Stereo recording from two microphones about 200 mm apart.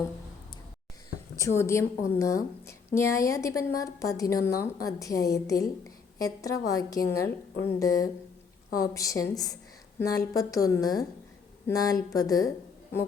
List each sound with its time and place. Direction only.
1.4 s a woman's voice: 15° left (ahead or behind)